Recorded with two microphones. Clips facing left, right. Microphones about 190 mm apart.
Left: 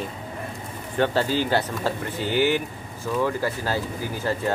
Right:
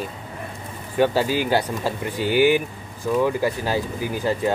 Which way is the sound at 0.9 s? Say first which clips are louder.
Right 3 dB; 10° right (ahead or behind).